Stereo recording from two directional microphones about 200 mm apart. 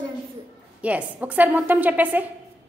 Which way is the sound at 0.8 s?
5° right (ahead or behind).